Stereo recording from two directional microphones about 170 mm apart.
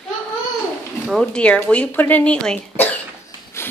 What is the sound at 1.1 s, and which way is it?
Speech, 5° left (ahead or behind).